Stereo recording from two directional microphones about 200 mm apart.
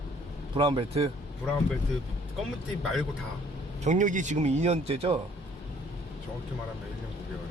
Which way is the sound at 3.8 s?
40° right (ahead or behind).